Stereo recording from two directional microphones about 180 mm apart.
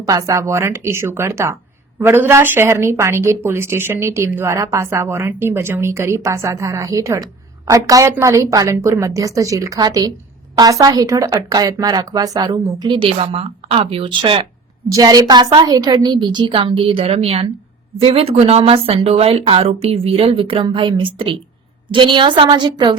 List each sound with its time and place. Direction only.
0.0 s speech: 20° right (ahead or behind)